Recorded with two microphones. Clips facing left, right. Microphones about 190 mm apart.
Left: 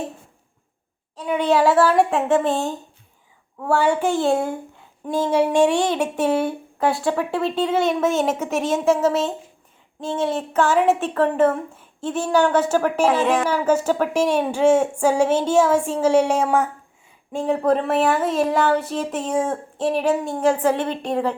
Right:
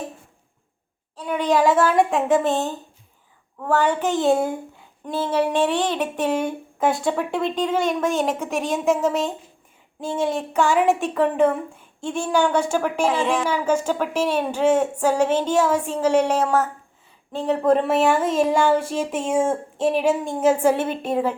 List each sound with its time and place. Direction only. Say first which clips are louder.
1.5 s speech: left 1 dB; 5° left (ahead or behind)
2.5 s speech: even; 10° left (ahead or behind)
4.2 s speech: right 1 dB; centre (ahead or behind)
5.0 s speech: left 3 dB; 10° left (ahead or behind)
8.4 s speech: left 2 dB; 15° right (ahead or behind)
8.7 s speech: left 2 dB; centre (ahead or behind)
13.1 s speech: left 2 dB; 55° left (ahead or behind)
13.5 s speech: left 2 dB; 5° left (ahead or behind)
17.4 s speech: right 1 dB; centre (ahead or behind)